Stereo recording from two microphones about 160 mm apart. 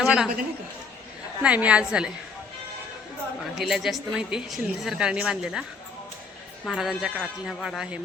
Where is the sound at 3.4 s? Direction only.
Centre (ahead or behind).